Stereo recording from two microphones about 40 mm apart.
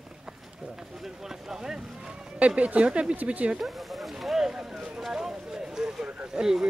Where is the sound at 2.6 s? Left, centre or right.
Right.